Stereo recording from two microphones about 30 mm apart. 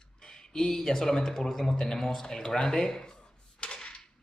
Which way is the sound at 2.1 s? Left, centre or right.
Centre.